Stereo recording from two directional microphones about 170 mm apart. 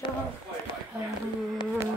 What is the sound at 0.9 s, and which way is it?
Speech, 5° right (ahead or behind).